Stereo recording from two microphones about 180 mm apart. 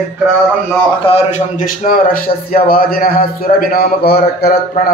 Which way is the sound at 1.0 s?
35° left (ahead or behind).